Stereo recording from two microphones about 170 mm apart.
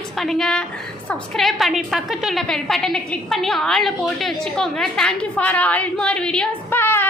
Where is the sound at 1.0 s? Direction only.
5° left (ahead or behind).